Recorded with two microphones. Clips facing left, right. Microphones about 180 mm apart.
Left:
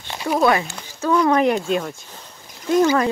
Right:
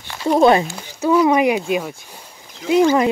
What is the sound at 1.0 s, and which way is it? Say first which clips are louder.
Speech: right 2 dB; 10° right (ahead or behind).